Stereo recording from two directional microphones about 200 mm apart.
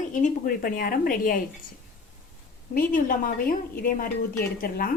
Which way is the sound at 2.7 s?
45° left (ahead or behind).